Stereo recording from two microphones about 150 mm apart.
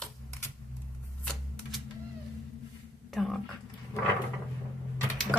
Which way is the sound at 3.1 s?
Centre (ahead or behind).